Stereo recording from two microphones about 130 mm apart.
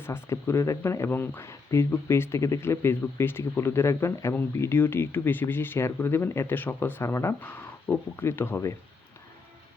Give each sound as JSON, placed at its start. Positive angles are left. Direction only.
{"t": 0.0, "sound": "speech", "side_deg": 20}